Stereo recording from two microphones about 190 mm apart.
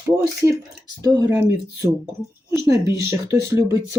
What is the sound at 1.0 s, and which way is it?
Speech, 20° right (ahead or behind).